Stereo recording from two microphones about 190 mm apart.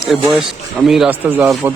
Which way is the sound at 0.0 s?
5° right (ahead or behind).